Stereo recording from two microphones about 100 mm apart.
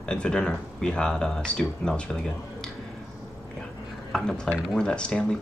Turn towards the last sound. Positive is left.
turn(degrees=10)  # may be behind; listen again after turning